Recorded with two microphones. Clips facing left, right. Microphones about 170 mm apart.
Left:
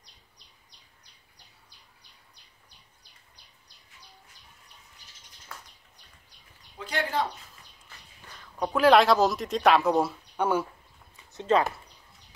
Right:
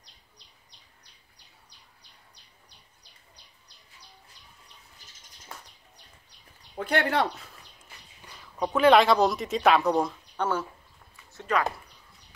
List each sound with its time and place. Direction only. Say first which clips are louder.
6.8 s speech: right 4 dB; 60° right (ahead or behind)
8.4 s speech: right 1 dB; centre (ahead or behind)
11.3 s speech: left 4 dB; 25° left (ahead or behind)